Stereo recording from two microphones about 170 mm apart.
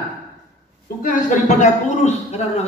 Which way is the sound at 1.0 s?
50° left (ahead or behind).